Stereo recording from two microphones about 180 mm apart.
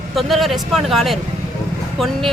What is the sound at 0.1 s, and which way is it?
Speech, centre (ahead or behind).